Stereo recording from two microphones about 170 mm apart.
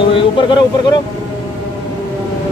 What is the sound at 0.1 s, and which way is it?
Vehicle, 30° left (ahead or behind).